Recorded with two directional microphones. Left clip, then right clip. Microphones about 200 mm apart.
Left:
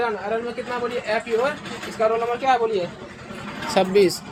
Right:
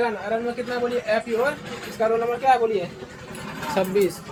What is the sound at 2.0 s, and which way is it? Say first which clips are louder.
Speech: left 1 dB; 30° left (ahead or behind).